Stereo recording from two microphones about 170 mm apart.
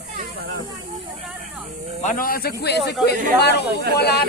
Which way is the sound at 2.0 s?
50° left (ahead or behind).